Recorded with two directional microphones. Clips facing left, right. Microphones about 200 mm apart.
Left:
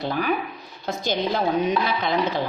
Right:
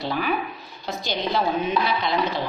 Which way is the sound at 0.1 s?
45° left (ahead or behind).